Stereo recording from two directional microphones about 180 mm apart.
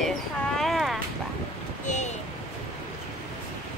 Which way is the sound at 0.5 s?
Centre (ahead or behind).